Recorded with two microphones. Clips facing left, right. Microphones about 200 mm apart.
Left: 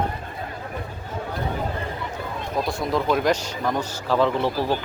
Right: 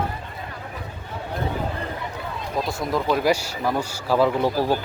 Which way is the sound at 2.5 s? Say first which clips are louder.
Left 1 dB; centre (ahead or behind).